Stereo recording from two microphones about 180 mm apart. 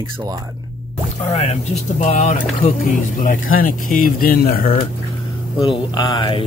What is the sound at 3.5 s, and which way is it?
Speech, 50° left (ahead or behind).